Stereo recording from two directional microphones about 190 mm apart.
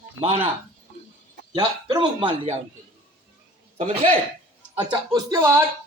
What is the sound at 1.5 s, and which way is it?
A man's voice, 25° right (ahead or behind).